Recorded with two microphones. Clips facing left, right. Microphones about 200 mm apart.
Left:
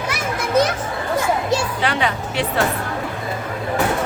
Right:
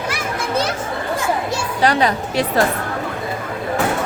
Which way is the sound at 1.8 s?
40° right (ahead or behind).